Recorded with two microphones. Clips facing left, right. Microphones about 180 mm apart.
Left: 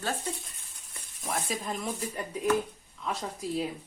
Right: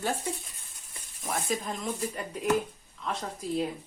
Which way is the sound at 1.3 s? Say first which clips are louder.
Right 1 dB; centre (ahead or behind).